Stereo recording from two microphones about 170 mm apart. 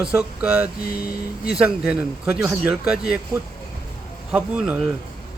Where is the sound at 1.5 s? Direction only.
5° right (ahead or behind).